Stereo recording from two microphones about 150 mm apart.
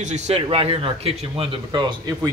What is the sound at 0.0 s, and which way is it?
A man's voice, 45° right (ahead or behind).